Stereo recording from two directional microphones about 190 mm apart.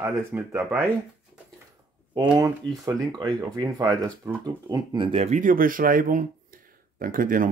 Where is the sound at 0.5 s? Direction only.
Centre (ahead or behind).